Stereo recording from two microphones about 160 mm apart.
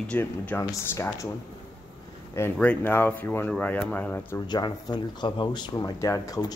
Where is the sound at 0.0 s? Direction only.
10° left (ahead or behind).